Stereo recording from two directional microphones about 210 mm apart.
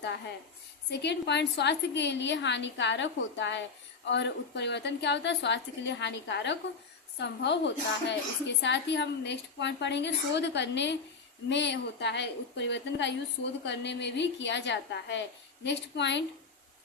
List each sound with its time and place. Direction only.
0.9 s a woman's voice: 55° left (ahead or behind)